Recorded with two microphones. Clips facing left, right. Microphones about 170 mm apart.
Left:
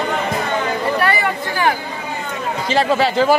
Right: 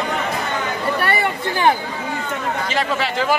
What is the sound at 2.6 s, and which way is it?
Chatter, 30° left (ahead or behind).